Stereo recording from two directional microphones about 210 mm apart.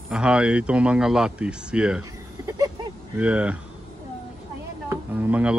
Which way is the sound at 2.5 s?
15° right (ahead or behind).